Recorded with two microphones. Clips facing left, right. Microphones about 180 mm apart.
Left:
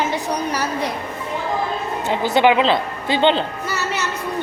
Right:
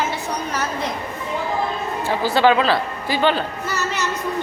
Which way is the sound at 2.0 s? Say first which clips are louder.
Left 1 dB; 20° left (ahead or behind).